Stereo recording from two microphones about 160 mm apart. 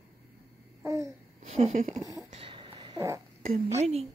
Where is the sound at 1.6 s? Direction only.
45° right (ahead or behind).